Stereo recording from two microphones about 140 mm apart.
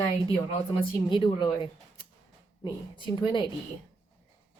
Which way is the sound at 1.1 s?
35° left (ahead or behind).